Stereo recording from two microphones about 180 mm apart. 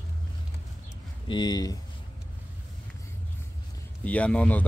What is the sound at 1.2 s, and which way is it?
Speech, 25° left (ahead or behind).